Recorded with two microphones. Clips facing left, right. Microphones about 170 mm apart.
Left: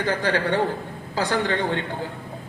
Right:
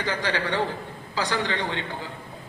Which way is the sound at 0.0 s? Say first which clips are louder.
Left 4 dB; 50° left (ahead or behind).